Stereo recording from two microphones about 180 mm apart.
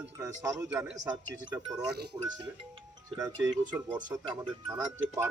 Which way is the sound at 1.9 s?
65° right (ahead or behind).